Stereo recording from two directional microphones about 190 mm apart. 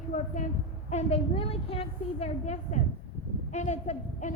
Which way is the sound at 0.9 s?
35° left (ahead or behind).